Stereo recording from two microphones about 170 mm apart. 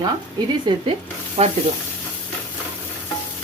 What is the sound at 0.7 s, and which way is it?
Speech, 25° right (ahead or behind).